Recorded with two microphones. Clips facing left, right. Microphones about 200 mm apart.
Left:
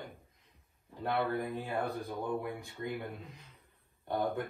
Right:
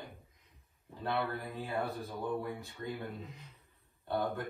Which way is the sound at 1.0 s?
15° left (ahead or behind).